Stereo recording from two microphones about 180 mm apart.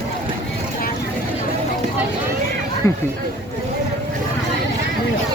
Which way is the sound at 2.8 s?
15° left (ahead or behind).